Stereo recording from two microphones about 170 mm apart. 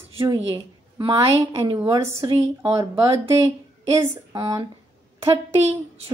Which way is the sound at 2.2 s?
35° right (ahead or behind).